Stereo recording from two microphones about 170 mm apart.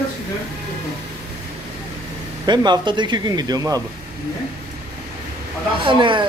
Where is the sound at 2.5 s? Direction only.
25° right (ahead or behind).